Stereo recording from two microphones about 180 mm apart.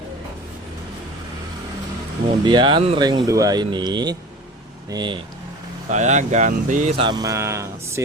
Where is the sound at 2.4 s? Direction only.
25° right (ahead or behind).